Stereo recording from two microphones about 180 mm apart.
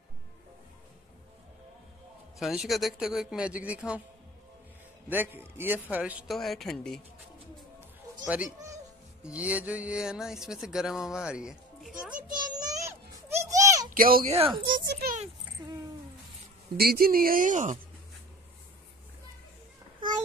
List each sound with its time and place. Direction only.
2.3 s speech: 5° right (ahead or behind)
5.1 s a man's voice: 10° right (ahead or behind)
9.2 s speech: 5° right (ahead or behind)
12.5 s a sound: 20° right (ahead or behind)
13.4 s children playing: 15° right (ahead or behind)
13.9 s speech: 50° right (ahead or behind)
14.3 s speech: 30° right (ahead or behind)
14.9 s a child's voice: 60° right (ahead or behind)
16.7 s speech: 60° right (ahead or behind)